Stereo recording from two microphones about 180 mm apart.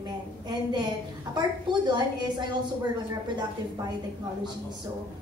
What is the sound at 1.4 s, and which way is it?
A woman's voice, 25° right (ahead or behind).